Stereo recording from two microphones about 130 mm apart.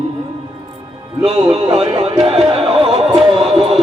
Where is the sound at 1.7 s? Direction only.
40° right (ahead or behind).